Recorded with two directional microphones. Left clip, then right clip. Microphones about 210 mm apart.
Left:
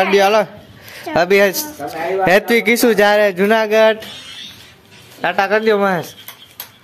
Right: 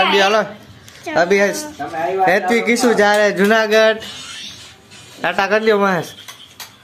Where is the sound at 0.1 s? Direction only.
30° left (ahead or behind).